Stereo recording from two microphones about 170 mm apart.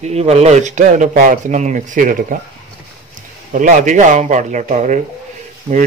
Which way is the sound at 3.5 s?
50° right (ahead or behind).